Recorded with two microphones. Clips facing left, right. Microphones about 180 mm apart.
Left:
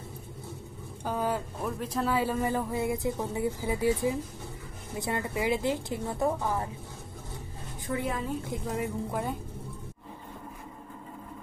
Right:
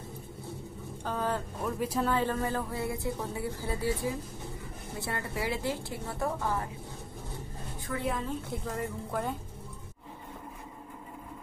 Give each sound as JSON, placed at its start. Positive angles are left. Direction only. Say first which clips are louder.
{"t": 1.0, "sound": "a woman's voice", "louder": "left 2 dB", "side_deg": 10}
{"t": 7.9, "sound": "a woman's voice", "louder": "left 4 dB", "side_deg": 25}
{"t": 8.5, "sound": "speech", "louder": "left 3 dB", "side_deg": 10}